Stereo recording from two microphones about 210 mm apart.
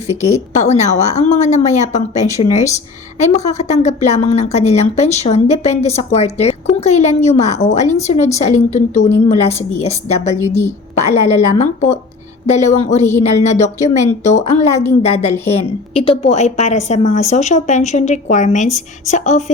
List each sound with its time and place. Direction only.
0.1 s a woman's voice: 35° left (ahead or behind)